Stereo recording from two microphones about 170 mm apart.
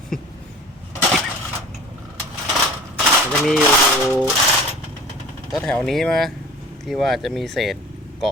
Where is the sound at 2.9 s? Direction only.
Centre (ahead or behind).